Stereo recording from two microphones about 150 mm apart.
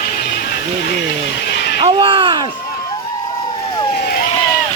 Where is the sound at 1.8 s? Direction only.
35° right (ahead or behind).